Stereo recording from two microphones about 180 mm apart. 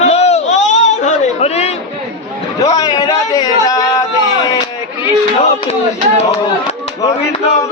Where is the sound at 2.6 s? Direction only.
20° left (ahead or behind).